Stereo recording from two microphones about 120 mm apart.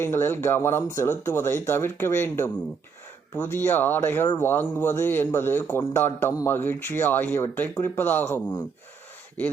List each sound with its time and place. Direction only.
0.0 s speech: 20° left (ahead or behind)